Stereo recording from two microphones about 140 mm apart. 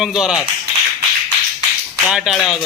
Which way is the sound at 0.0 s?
5° right (ahead or behind).